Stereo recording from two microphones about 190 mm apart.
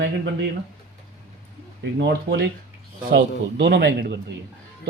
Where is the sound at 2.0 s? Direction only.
55° right (ahead or behind).